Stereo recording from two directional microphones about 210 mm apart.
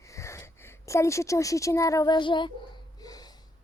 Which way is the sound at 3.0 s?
20° left (ahead or behind).